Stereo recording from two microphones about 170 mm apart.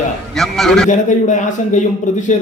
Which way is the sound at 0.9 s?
45° left (ahead or behind).